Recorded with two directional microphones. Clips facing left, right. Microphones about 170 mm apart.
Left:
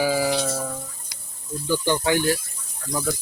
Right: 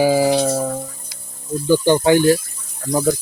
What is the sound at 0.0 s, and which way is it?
Music, 30° right (ahead or behind).